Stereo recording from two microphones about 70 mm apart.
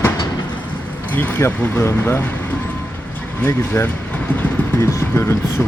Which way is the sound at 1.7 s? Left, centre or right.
Left.